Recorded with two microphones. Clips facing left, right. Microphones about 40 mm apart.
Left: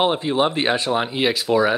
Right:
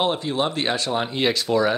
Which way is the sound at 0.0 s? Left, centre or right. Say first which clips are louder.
Left 4 dB; centre.